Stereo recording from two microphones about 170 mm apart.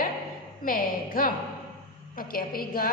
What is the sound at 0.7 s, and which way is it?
A woman's voice, 55° left (ahead or behind).